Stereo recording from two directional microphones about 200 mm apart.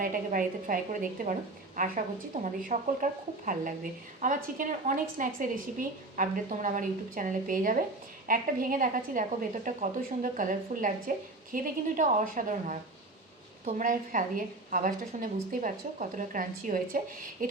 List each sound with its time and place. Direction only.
0.0 s a woman's voice: 45° right (ahead or behind)